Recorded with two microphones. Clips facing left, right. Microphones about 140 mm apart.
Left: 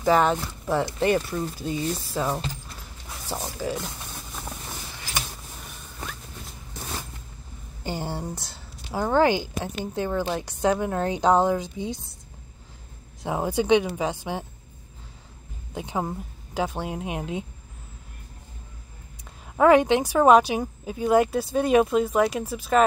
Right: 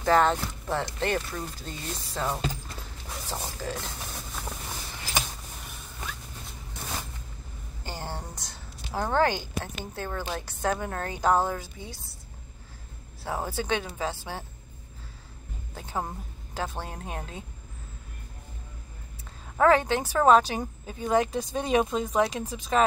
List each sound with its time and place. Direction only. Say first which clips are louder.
0.0 s a woman's voice: left 2 dB; 15° left (ahead or behind)
7.8 s a woman's voice: left 6 dB; 15° left (ahead or behind)
13.2 s a woman's voice: left 6 dB; 15° left (ahead or behind)
15.7 s a woman's voice: left 5 dB; 15° left (ahead or behind)
19.5 s a woman's voice: left 4 dB; 10° left (ahead or behind)